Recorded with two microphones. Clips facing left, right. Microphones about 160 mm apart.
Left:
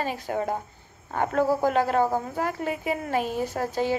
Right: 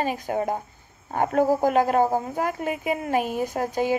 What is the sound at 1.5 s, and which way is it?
A woman's voice, 15° right (ahead or behind).